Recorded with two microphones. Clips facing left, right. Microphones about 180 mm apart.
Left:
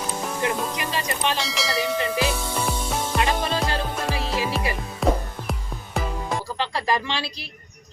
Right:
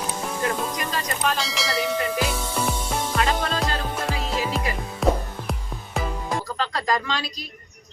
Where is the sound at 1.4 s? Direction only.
Centre (ahead or behind).